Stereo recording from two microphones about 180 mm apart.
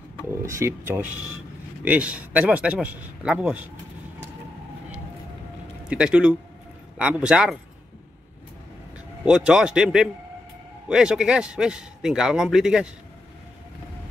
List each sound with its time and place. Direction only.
0.3 s speech: 15° right (ahead or behind)
5.9 s a man's voice: 5° right (ahead or behind)
9.2 s a man's voice: 5° right (ahead or behind)